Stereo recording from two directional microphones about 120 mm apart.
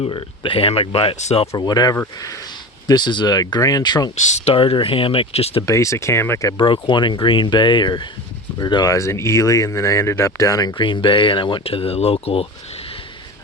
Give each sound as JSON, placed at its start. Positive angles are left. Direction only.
{"t": 0.0, "sound": "speech", "side_deg": 45}
{"t": 1.5, "sound": "speech", "side_deg": 35}
{"t": 4.3, "sound": "speech", "side_deg": 70}
{"t": 4.5, "sound": "speech", "side_deg": 50}
{"t": 5.6, "sound": "speech", "side_deg": 25}
{"t": 6.6, "sound": "speech", "side_deg": 45}
{"t": 10.8, "sound": "speech", "side_deg": 45}